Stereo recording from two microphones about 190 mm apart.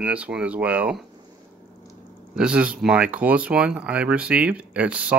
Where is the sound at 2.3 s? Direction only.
5° right (ahead or behind).